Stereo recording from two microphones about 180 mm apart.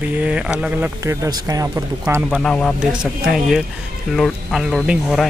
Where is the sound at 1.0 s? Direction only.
15° right (ahead or behind).